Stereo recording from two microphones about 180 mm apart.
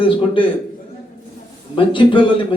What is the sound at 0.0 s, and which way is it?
Speech, 30° left (ahead or behind).